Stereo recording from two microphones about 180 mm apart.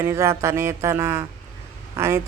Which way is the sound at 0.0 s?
15° right (ahead or behind).